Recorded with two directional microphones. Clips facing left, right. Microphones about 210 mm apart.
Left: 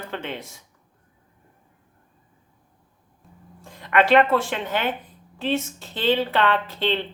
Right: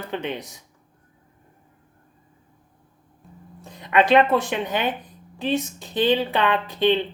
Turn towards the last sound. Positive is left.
turn(degrees=-15)  # may be behind; listen again after turning